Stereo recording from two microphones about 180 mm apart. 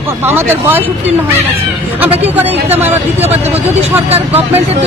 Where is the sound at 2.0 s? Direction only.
10° right (ahead or behind).